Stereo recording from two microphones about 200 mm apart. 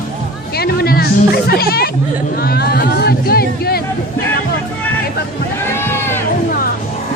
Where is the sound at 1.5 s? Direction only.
50° left (ahead or behind).